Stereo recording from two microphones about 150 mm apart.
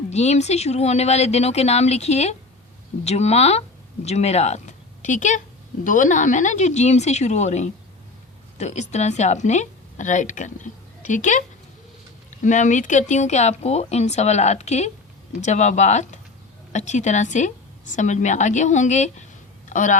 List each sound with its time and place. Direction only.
0.1 s speech: 45° left (ahead or behind)